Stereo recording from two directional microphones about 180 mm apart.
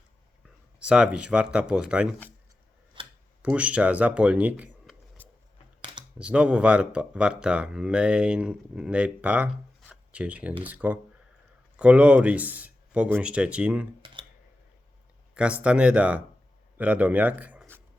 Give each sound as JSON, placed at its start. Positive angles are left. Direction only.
{"t": 0.8, "sound": "speech", "side_deg": -5}
{"t": 3.0, "sound": "a sound", "side_deg": -25}
{"t": 3.4, "sound": "speech", "side_deg": -5}
{"t": 5.8, "sound": "a sound", "side_deg": -25}
{"t": 6.1, "sound": "speech", "side_deg": -5}
{"t": 15.4, "sound": "speech", "side_deg": -5}